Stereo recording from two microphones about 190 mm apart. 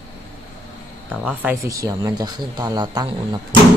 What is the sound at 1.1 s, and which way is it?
Speech, 5° right (ahead or behind).